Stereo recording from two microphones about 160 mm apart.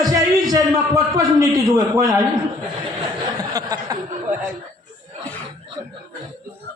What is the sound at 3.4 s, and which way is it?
Speech, 25° right (ahead or behind).